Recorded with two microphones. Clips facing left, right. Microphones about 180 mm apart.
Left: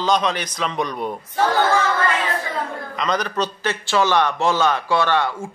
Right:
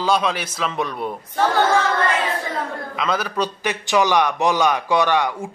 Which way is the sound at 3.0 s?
5° right (ahead or behind).